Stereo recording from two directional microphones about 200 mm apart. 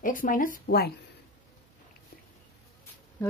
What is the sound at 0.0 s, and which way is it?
Speech, 45° left (ahead or behind).